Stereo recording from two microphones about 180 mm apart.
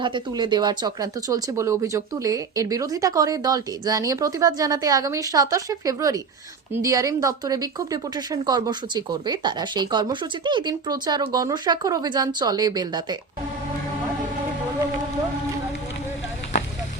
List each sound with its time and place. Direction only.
0.0 s speech: 25° right (ahead or behind)